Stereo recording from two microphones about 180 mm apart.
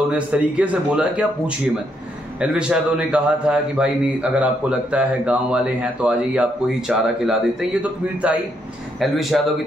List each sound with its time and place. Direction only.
0.1 s speech: 5° right (ahead or behind)
2.4 s a man's voice: 5° right (ahead or behind)